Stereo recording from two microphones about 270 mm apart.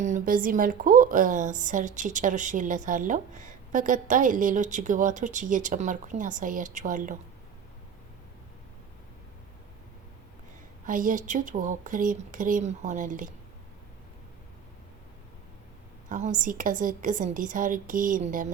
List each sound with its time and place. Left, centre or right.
0.0 s a woman's voice: right
10.8 s a woman's voice: right
16.0 s a woman's voice: right